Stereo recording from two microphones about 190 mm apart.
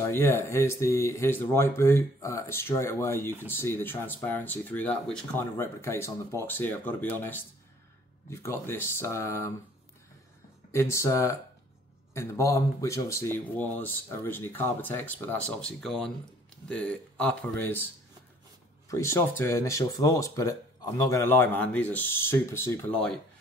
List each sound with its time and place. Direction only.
0.0 s speech: 10° left (ahead or behind)
10.7 s speech: 15° left (ahead or behind)
18.9 s speech: 15° left (ahead or behind)